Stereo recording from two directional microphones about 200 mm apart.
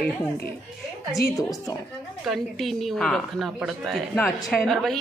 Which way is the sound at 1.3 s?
15° left (ahead or behind).